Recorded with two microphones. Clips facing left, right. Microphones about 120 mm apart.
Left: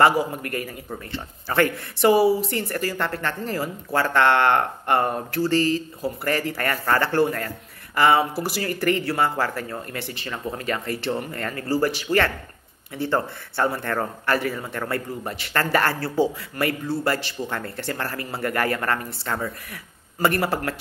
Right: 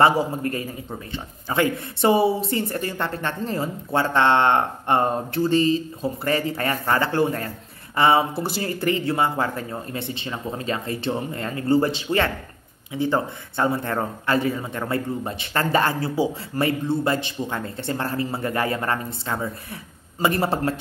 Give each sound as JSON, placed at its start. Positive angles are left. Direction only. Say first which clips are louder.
{"t": 0.0, "sound": "a man's voice", "louder": "right 1 dB", "side_deg": -25}